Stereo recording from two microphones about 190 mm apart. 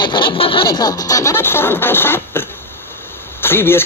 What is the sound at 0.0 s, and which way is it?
Speech, 25° left (ahead or behind).